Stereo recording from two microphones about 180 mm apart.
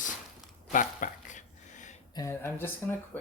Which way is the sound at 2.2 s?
15° left (ahead or behind).